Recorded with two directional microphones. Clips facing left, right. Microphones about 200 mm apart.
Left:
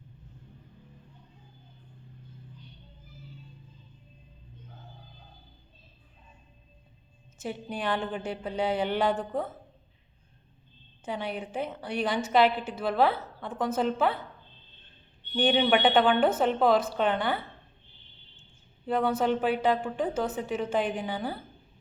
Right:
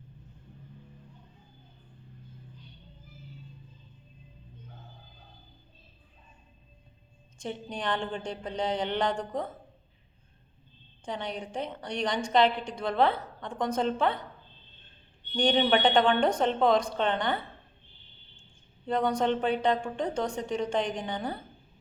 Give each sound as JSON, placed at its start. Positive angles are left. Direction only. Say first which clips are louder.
{"t": 7.3, "sound": "a woman's voice", "louder": "left 1 dB", "side_deg": 5}
{"t": 11.0, "sound": "a woman's voice", "louder": "left 2 dB", "side_deg": 5}
{"t": 15.4, "sound": "a woman's voice", "louder": "left 1 dB", "side_deg": 5}
{"t": 18.9, "sound": "a woman's voice", "louder": "left 1 dB", "side_deg": 5}